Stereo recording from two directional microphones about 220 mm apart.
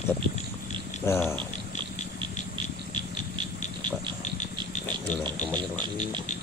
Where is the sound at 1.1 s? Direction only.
10° left (ahead or behind).